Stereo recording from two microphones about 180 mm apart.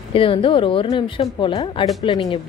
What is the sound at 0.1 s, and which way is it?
A woman's voice, 30° left (ahead or behind).